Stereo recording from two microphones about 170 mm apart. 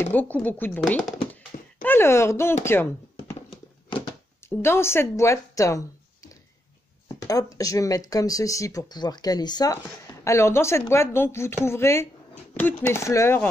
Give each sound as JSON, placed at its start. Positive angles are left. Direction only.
{"t": 0.0, "sound": "speech", "side_deg": 10}
{"t": 1.3, "sound": "a sound", "side_deg": 10}
{"t": 4.4, "sound": "speech", "side_deg": 15}